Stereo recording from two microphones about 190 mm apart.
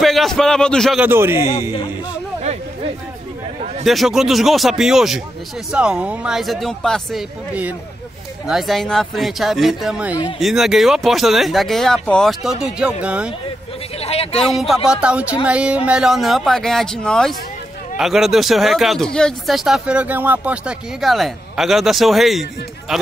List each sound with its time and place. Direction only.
0.0 s a man's voice: centre (ahead or behind)
1.0 s a man's voice: 10° right (ahead or behind)
3.8 s speech: centre (ahead or behind)
14.0 s a sound: 30° left (ahead or behind)
14.4 s speech: centre (ahead or behind)